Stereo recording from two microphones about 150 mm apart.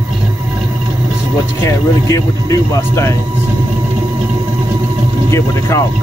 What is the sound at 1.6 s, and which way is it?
Music, 20° left (ahead or behind).